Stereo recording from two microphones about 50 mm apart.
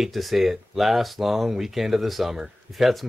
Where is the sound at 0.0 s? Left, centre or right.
Centre.